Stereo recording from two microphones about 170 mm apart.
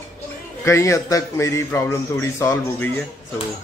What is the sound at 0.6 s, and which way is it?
A man's voice, 15° left (ahead or behind).